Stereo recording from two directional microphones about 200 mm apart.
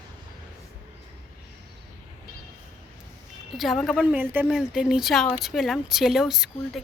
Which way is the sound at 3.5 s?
Centre (ahead or behind).